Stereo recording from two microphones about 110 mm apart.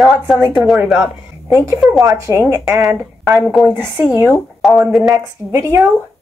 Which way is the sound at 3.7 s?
20° right (ahead or behind).